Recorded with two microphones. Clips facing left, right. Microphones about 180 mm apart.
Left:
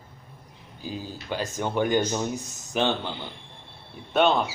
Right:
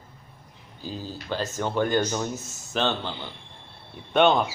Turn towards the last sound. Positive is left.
turn(degrees=5)  # may be behind; listen again after turning